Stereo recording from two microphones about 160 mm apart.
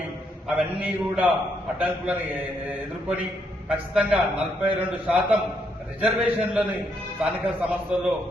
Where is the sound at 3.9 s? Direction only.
5° right (ahead or behind).